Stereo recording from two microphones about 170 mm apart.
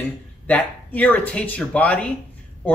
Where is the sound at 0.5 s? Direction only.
10° left (ahead or behind).